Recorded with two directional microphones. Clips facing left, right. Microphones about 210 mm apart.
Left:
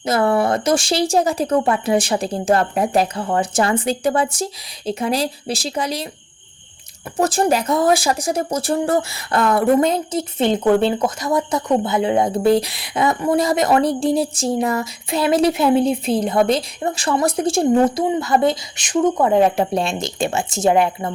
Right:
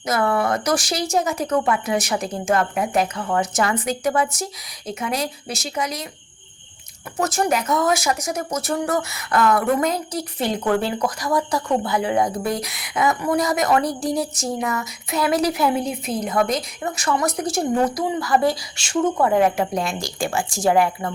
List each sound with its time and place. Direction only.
0.0 s speech: 30° left (ahead or behind)
7.2 s speech: 30° left (ahead or behind)